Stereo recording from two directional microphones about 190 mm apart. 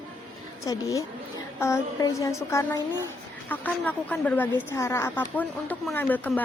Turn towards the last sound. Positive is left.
turn(degrees=10)  # may be behind; listen again after turning